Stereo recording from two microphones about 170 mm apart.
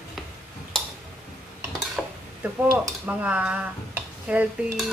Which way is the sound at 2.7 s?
10° right (ahead or behind).